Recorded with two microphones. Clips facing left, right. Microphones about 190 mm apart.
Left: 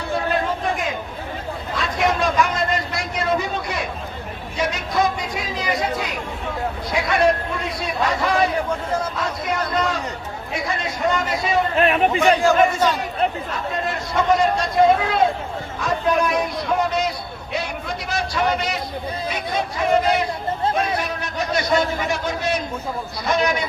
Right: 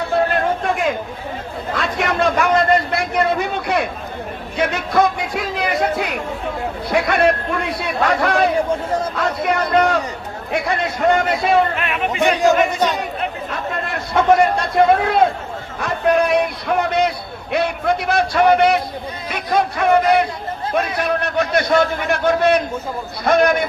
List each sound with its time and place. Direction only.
0.3 s chatter: 60° right (ahead or behind)
1.7 s a sound: 60° right (ahead or behind)
6.9 s a man's voice: 60° right (ahead or behind)
11.8 s speech: 35° left (ahead or behind)
13.9 s a man's voice: 60° right (ahead or behind)
15.8 s a sound: 60° right (ahead or behind)
19.3 s a man's voice: 60° right (ahead or behind)